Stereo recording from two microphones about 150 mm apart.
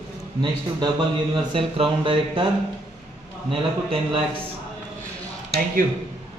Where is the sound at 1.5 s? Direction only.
35° right (ahead or behind).